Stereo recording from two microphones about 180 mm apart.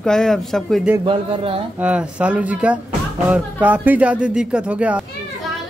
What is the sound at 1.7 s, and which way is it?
Speech, 5° right (ahead or behind).